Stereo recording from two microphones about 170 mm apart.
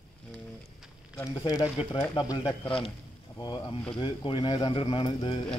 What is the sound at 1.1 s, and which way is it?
Speech, 15° left (ahead or behind).